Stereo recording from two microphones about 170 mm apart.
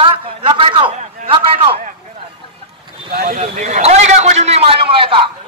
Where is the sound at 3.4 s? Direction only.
45° right (ahead or behind).